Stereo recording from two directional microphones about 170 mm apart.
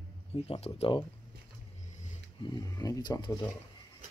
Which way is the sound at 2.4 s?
25° left (ahead or behind).